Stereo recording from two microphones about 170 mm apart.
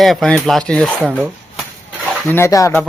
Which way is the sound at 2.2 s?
15° left (ahead or behind).